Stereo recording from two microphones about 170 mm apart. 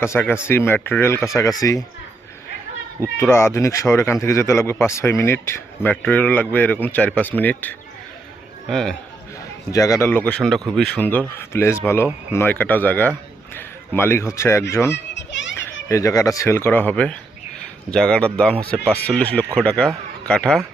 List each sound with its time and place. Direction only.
0.0 s speech: 15° left (ahead or behind)
3.3 s speech: 15° left (ahead or behind)
9.7 s a man's voice: 20° left (ahead or behind)
14.9 s children playing: 90° left
15.9 s speech: 20° left (ahead or behind)